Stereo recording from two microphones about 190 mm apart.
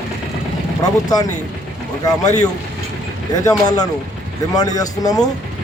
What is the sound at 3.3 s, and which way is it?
Speech, 20° left (ahead or behind).